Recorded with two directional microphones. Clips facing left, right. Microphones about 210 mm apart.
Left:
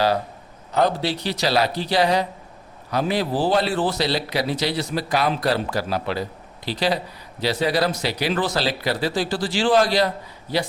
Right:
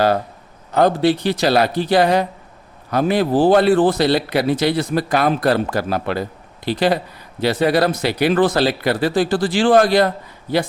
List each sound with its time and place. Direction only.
0.7 s a man's voice: 50° right (ahead or behind)